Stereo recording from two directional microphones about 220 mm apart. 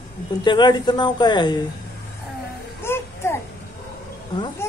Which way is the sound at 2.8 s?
10° left (ahead or behind).